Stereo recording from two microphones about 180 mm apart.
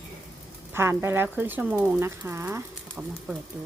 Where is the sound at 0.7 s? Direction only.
15° right (ahead or behind).